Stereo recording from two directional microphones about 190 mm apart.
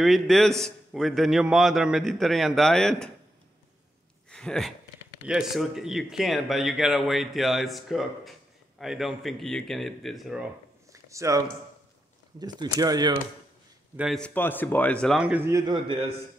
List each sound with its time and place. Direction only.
0.0 s speech: centre (ahead or behind)
4.3 s speech: 5° left (ahead or behind)
10.9 s a sound: 15° right (ahead or behind)
12.4 s speech: 20° right (ahead or behind)
13.9 s speech: centre (ahead or behind); by 16.1 s 25° right (ahead or behind)